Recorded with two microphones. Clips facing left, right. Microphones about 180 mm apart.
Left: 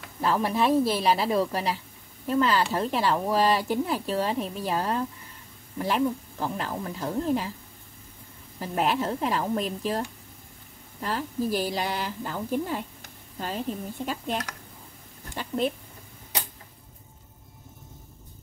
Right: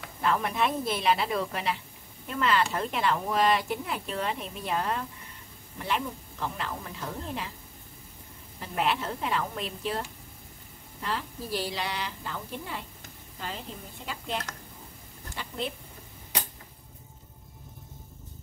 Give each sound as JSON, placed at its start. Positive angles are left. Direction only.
{"t": 0.2, "sound": "speech", "side_deg": 30}
{"t": 8.5, "sound": "a woman's voice", "side_deg": 40}
{"t": 14.0, "sound": "a woman's voice", "side_deg": 45}